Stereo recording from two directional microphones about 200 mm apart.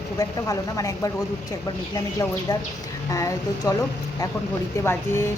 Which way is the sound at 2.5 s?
20° left (ahead or behind).